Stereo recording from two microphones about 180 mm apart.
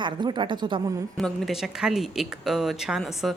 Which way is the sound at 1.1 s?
Centre (ahead or behind).